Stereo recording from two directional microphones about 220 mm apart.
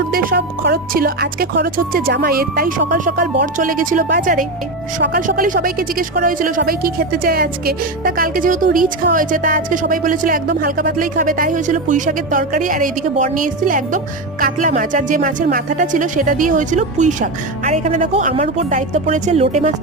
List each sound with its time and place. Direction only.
0.1 s a woman's voice: 40° right (ahead or behind)